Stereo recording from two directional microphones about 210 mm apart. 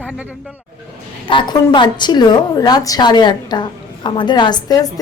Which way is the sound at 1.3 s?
25° left (ahead or behind).